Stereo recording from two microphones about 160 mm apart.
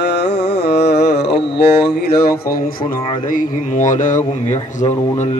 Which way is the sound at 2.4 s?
65° left (ahead or behind).